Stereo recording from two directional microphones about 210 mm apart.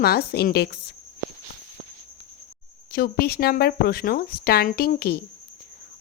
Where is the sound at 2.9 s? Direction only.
45° left (ahead or behind).